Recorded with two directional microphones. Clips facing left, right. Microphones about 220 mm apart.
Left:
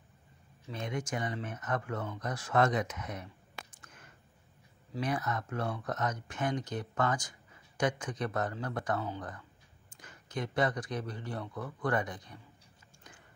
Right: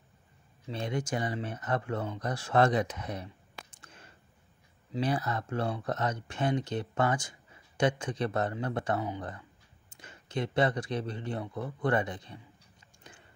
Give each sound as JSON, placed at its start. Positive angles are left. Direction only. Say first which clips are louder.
{"t": 0.7, "sound": "speech", "louder": "right 4 dB", "side_deg": -30}
{"t": 3.8, "sound": "a sound", "louder": "right 2 dB", "side_deg": -30}
{"t": 4.9, "sound": "speech", "louder": "right 3 dB", "side_deg": -30}